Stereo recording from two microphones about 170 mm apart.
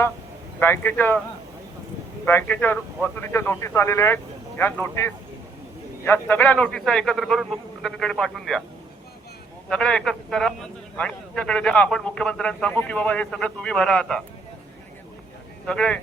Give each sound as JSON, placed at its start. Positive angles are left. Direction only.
{"t": 0.6, "sound": "speech", "side_deg": 10}
{"t": 2.2, "sound": "a man's voice", "side_deg": 10}
{"t": 9.6, "sound": "a man's voice", "side_deg": 5}
{"t": 15.6, "sound": "speech", "side_deg": 5}